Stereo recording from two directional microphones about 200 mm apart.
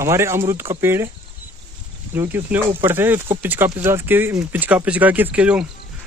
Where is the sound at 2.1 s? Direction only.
10° right (ahead or behind).